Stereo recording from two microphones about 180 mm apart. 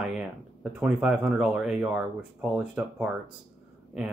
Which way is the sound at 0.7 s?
5° right (ahead or behind).